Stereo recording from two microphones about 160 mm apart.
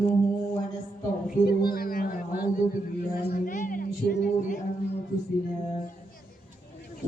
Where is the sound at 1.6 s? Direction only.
70° left (ahead or behind).